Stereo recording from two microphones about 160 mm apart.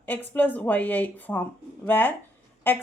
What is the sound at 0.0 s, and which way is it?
Speech, 10° left (ahead or behind).